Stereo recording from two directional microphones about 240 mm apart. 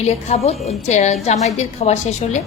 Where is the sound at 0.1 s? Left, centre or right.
Left.